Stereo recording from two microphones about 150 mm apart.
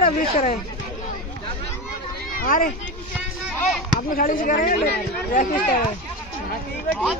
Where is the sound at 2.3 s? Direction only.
70° left (ahead or behind).